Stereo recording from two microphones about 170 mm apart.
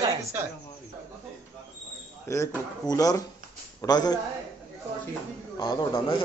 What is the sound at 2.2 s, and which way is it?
Speech, 15° left (ahead or behind).